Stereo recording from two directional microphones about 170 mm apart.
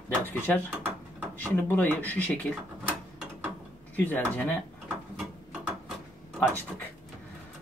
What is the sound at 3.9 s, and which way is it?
Speech, 10° left (ahead or behind).